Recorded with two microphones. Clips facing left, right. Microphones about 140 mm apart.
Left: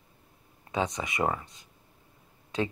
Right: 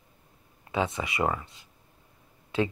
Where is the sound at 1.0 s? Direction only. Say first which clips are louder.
Right 1 dB; 45° left (ahead or behind).